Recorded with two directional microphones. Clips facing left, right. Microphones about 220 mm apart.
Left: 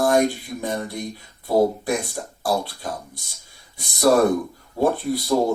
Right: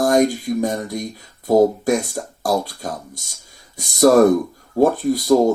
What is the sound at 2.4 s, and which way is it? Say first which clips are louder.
Speech: right 3 dB; 45° right (ahead or behind).